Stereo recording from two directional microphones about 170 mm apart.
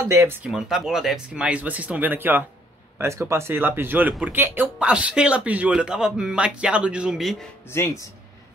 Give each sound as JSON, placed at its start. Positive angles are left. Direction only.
{"t": 0.1, "sound": "speech", "side_deg": -15}
{"t": 0.5, "sound": "speech", "side_deg": 0}
{"t": 7.7, "sound": "speech", "side_deg": 15}